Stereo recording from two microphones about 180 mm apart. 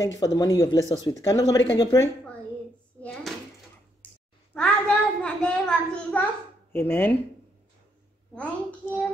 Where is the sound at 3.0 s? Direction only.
Centre (ahead or behind).